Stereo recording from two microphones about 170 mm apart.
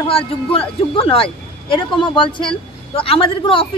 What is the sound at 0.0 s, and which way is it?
A woman's voice, 30° left (ahead or behind).